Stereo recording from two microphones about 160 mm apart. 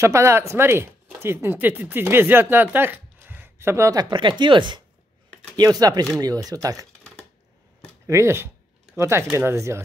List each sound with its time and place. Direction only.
0.0 s speech: 15° right (ahead or behind)
7.0 s typewriter: 5° left (ahead or behind)
8.1 s speech: 15° right (ahead or behind)